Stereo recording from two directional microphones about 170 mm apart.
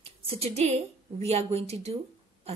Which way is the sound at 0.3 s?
40° right (ahead or behind).